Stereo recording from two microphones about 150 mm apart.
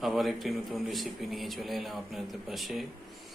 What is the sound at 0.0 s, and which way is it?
A man's voice, centre (ahead or behind).